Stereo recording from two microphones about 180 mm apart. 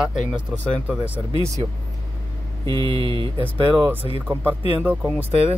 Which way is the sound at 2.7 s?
20° left (ahead or behind).